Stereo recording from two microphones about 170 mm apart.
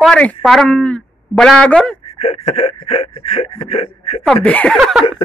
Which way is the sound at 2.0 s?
35° left (ahead or behind).